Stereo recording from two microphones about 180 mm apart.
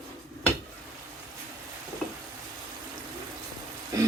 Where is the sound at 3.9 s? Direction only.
15° right (ahead or behind).